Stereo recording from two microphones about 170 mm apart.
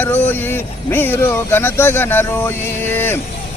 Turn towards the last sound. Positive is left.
turn(degrees=10)  # may be behind; listen again after turning